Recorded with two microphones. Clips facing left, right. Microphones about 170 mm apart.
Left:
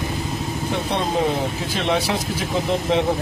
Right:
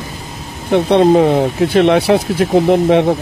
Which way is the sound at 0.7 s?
65° right (ahead or behind).